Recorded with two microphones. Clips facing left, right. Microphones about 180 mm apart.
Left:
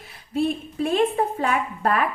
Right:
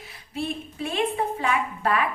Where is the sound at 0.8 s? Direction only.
45° left (ahead or behind).